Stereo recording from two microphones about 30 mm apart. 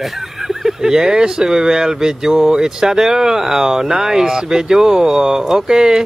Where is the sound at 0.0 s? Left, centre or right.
Centre.